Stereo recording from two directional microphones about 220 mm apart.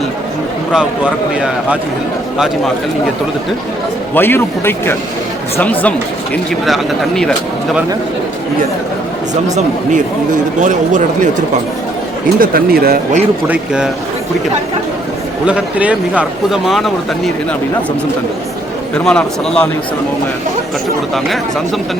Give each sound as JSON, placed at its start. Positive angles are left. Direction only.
{"t": 4.1, "sound": "a man's voice", "side_deg": 10}
{"t": 9.3, "sound": "speech", "side_deg": -35}
{"t": 12.4, "sound": "speech", "side_deg": -40}
{"t": 13.5, "sound": "speech", "side_deg": -5}
{"t": 15.4, "sound": "speech", "side_deg": -5}
{"t": 18.9, "sound": "speech", "side_deg": 5}